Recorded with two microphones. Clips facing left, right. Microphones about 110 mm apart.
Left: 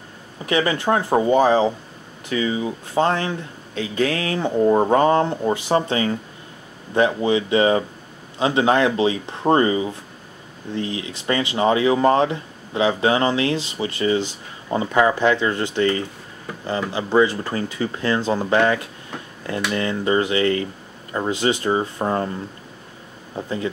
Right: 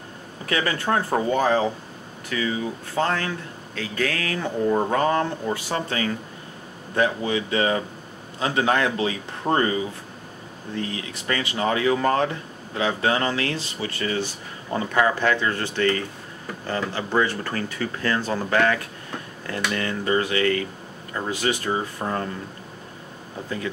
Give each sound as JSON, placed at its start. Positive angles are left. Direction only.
{"t": 0.5, "sound": "speech", "side_deg": 20}